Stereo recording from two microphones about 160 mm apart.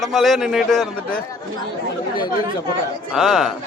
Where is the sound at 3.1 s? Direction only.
Centre (ahead or behind).